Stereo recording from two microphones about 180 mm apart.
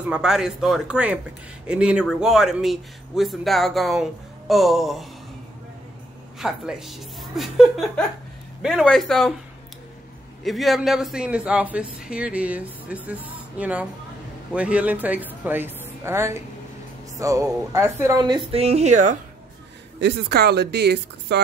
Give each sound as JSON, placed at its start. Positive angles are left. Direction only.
{"t": 0.0, "sound": "speech", "side_deg": -5}
{"t": 6.4, "sound": "speech", "side_deg": -5}
{"t": 10.4, "sound": "a woman's voice", "side_deg": 0}
{"t": 20.0, "sound": "speech", "side_deg": -70}